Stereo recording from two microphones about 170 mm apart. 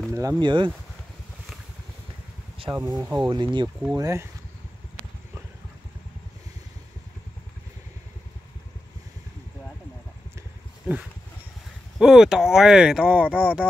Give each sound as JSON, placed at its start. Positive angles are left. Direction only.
{"t": 0.1, "sound": "speech", "side_deg": -15}
{"t": 0.4, "sound": "speech", "side_deg": -25}
{"t": 2.7, "sound": "speech", "side_deg": -20}
{"t": 12.0, "sound": "speech", "side_deg": -5}